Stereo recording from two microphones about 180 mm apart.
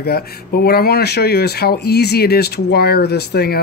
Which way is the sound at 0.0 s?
60° left (ahead or behind).